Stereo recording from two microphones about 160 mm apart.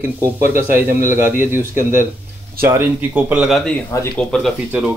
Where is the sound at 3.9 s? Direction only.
20° left (ahead or behind).